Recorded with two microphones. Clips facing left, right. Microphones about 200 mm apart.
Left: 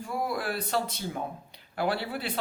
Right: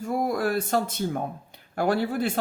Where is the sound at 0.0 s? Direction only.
45° right (ahead or behind).